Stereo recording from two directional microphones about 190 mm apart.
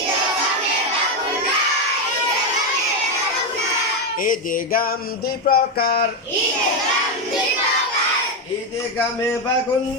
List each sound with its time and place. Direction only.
4.2 s music: 45° left (ahead or behind)